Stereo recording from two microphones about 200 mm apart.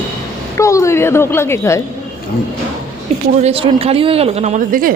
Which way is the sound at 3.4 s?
30° right (ahead or behind).